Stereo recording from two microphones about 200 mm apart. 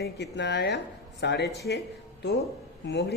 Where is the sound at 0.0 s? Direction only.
60° left (ahead or behind).